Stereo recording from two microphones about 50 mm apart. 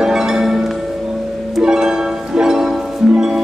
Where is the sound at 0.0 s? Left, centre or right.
Centre.